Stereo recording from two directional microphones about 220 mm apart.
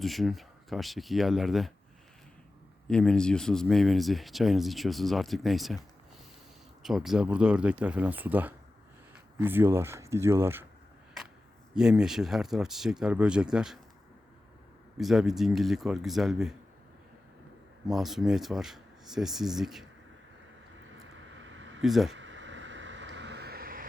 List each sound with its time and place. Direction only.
0.0 s speech: centre (ahead or behind)
2.8 s speech: 5° left (ahead or behind)
6.8 s speech: centre (ahead or behind)
11.7 s speech: 5° right (ahead or behind)
14.9 s speech: centre (ahead or behind)
17.8 s speech: centre (ahead or behind)
21.3 s a sound: 55° right (ahead or behind)
21.8 s speech: centre (ahead or behind)
22.1 s a sound: 55° right (ahead or behind)